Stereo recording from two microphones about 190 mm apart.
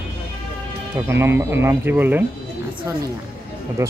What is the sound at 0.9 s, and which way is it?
Speech, 15° right (ahead or behind).